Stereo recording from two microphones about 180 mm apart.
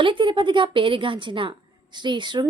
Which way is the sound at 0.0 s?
30° right (ahead or behind).